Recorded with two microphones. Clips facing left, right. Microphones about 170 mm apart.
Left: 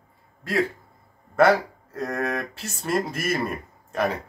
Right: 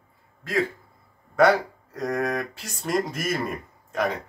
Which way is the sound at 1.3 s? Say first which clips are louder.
Left 1 dB; centre (ahead or behind).